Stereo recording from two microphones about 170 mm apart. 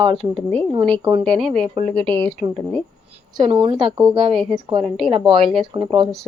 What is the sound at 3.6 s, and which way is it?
Speech, 30° right (ahead or behind).